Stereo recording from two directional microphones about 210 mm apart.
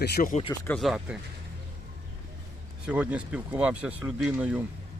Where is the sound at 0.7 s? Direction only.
Centre (ahead or behind).